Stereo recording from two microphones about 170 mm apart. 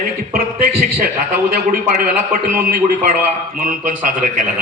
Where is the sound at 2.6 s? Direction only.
55° right (ahead or behind).